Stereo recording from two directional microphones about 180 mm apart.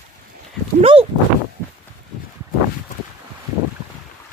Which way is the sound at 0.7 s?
30° right (ahead or behind).